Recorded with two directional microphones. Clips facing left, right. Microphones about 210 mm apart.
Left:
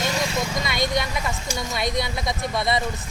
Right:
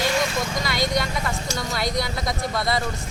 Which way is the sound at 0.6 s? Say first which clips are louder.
Right 2 dB; 20° left (ahead or behind).